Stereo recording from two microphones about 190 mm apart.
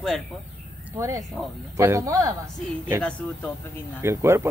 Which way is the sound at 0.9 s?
15° right (ahead or behind).